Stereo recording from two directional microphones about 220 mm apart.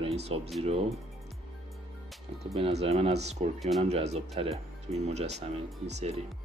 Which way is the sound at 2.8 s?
30° right (ahead or behind).